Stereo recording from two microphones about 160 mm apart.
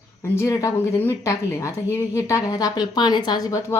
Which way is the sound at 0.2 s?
20° left (ahead or behind).